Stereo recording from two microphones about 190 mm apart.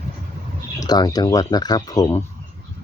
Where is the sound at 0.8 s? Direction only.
20° left (ahead or behind).